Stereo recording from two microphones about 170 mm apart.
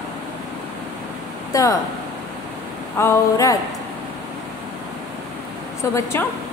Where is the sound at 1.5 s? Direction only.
20° left (ahead or behind).